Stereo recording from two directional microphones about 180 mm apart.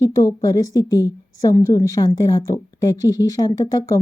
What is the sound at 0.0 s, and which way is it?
A woman's voice, 20° left (ahead or behind).